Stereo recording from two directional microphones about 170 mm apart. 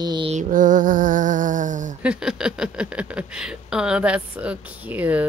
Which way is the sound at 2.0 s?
5° right (ahead or behind).